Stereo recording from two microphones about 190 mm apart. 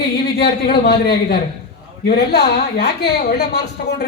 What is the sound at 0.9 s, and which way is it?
A woman's voice, 55° left (ahead or behind).